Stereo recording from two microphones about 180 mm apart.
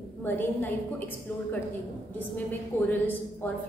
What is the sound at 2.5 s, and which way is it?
A woman's voice, 10° left (ahead or behind).